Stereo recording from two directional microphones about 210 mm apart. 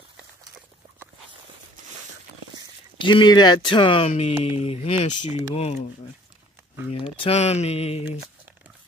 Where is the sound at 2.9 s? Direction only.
20° left (ahead or behind).